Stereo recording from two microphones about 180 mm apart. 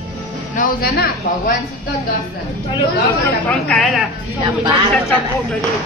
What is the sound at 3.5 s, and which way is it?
Speech, 5° left (ahead or behind).